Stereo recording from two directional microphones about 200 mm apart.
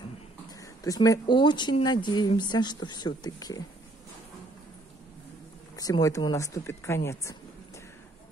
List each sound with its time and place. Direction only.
0.6 s speech: 15° left (ahead or behind)
5.8 s speech: 20° left (ahead or behind)